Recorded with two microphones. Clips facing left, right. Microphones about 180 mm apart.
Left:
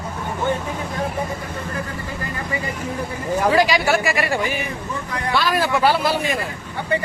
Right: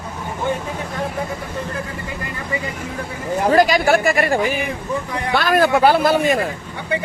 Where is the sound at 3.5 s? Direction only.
50° right (ahead or behind).